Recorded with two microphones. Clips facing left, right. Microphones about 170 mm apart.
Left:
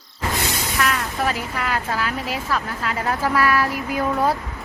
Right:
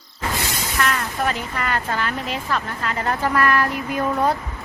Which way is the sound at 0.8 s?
Centre (ahead or behind).